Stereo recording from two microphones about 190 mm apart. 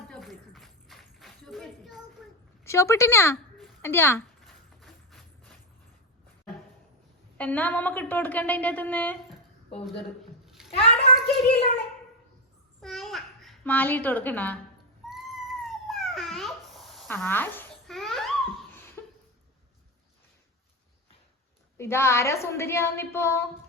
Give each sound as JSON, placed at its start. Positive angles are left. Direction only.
{"t": 0.1, "sound": "a sound", "side_deg": 0}
{"t": 2.6, "sound": "a woman's voice", "side_deg": 15}
{"t": 4.4, "sound": "a sound", "side_deg": 0}
{"t": 7.3, "sound": "a woman's voice", "side_deg": 10}
{"t": 10.4, "sound": "bathtub", "side_deg": 0}
{"t": 10.7, "sound": "a child's voice", "side_deg": 30}
{"t": 12.8, "sound": "babbling", "side_deg": 0}
{"t": 15.1, "sound": "cat", "side_deg": 0}
{"t": 17.1, "sound": "a woman's voice", "side_deg": 10}
{"t": 17.8, "sound": "babbling", "side_deg": 0}
{"t": 19.0, "sound": "a sound", "side_deg": 10}
{"t": 21.8, "sound": "a woman's voice", "side_deg": 15}